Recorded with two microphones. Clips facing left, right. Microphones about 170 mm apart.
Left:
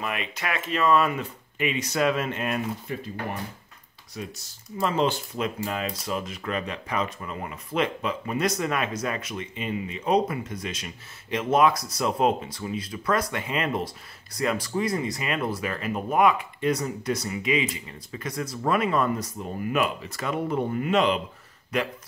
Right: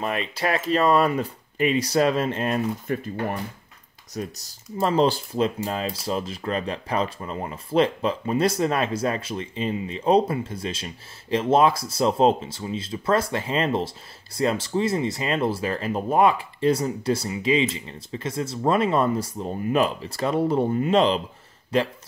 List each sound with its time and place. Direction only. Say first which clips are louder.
0.0 s speech: right 5 dB; 35° right (ahead or behind)
2.9 s speech: right 6 dB; 50° right (ahead or behind)
4.1 s speech: right 5 dB; 40° right (ahead or behind)